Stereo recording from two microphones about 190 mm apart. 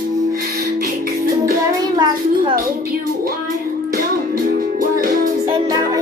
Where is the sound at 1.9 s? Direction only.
20° right (ahead or behind).